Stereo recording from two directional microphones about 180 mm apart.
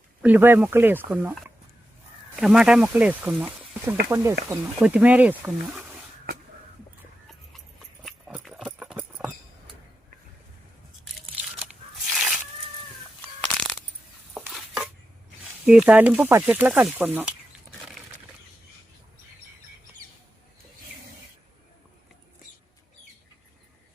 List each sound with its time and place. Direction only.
0.2 s speech: 10° right (ahead or behind)
8.0 s horse: centre (ahead or behind)
12.0 s a sound: centre (ahead or behind)
14.4 s chopping: centre (ahead or behind)
15.6 s speech: 5° right (ahead or behind)